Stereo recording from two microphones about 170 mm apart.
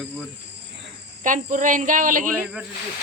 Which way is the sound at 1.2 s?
50° right (ahead or behind).